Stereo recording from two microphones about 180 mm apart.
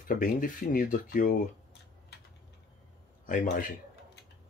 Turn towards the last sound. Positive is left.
turn(degrees=50)  # may be behind; listen again after turning